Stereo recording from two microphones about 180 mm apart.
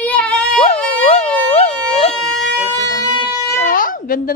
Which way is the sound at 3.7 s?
50° left (ahead or behind).